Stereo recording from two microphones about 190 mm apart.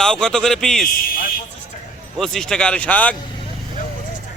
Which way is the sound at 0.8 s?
50° left (ahead or behind).